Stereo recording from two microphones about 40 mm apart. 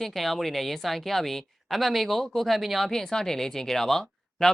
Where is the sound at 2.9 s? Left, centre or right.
Centre.